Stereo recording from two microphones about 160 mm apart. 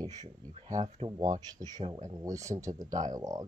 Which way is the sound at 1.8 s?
40° right (ahead or behind).